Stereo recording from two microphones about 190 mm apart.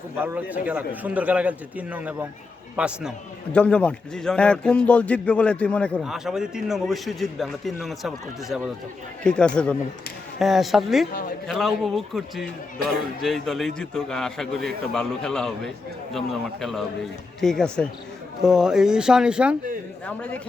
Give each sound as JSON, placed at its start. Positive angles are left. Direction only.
{"t": 0.2, "sound": "a man's voice", "side_deg": -10}
{"t": 3.5, "sound": "a man's voice", "side_deg": 5}
{"t": 11.1, "sound": "a man's voice", "side_deg": 50}
{"t": 11.4, "sound": "a man's voice", "side_deg": 0}
{"t": 20.1, "sound": "a man's voice", "side_deg": 5}